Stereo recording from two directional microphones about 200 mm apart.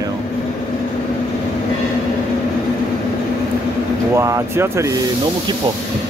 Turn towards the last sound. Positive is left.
turn(degrees=-15)  # may be behind; listen again after turning